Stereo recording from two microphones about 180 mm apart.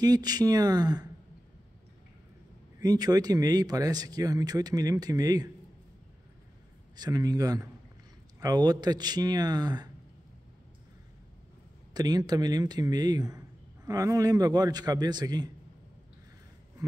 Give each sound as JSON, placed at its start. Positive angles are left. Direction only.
{"t": 0.0, "sound": "speech", "side_deg": -20}
{"t": 2.8, "sound": "speech", "side_deg": -20}
{"t": 7.0, "sound": "speech", "side_deg": -20}
{"t": 11.9, "sound": "speech", "side_deg": -20}